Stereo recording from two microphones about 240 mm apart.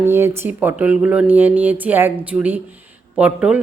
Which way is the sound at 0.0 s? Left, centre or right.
Centre.